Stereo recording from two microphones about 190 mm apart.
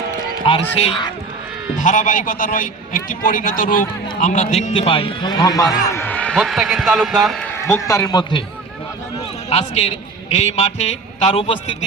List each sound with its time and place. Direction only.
0.4 s speech: 30° left (ahead or behind)
1.8 s a man's voice: 40° left (ahead or behind); by 7.3 s centre (ahead or behind)
7.7 s a man's voice: 15° left (ahead or behind)
9.5 s a man's voice: 35° left (ahead or behind)